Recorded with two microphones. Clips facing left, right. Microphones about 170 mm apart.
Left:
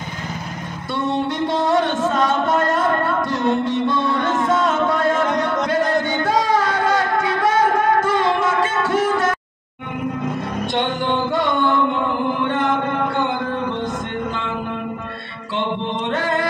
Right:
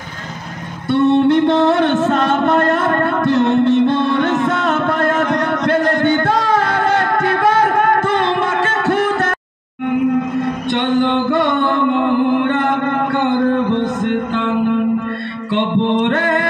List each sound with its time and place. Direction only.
0.9 s music: 60° right (ahead or behind)
10.7 s music: 60° right (ahead or behind)
14.0 s music: 65° right (ahead or behind)
15.5 s music: 60° right (ahead or behind)